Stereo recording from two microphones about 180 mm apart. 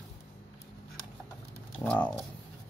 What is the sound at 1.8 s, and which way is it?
Speech, 10° left (ahead or behind).